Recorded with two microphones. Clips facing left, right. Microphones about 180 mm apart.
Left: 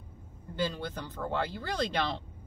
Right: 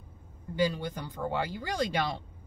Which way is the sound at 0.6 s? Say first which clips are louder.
Right 4 dB; 10° right (ahead or behind).